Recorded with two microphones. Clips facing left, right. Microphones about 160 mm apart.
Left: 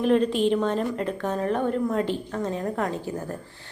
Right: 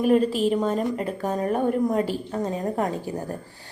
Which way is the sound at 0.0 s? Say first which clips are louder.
Right 1 dB; 5° right (ahead or behind).